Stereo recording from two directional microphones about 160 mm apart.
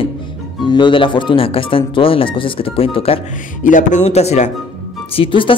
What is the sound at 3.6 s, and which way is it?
Speech, 55° left (ahead or behind).